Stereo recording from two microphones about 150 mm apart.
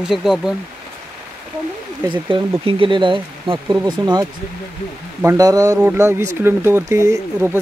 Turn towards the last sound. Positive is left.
turn(degrees=-15)  # may be behind; listen again after turning